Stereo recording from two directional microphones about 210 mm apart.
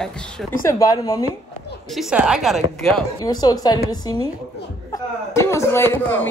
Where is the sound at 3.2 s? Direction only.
20° left (ahead or behind).